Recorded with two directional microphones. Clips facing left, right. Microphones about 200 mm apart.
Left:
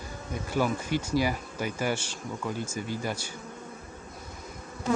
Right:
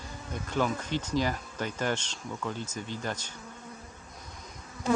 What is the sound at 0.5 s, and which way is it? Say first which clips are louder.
A man's voice: left 2 dB; 10° left (ahead or behind).